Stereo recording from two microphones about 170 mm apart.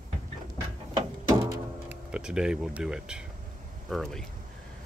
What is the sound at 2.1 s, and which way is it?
Speech, 5° right (ahead or behind).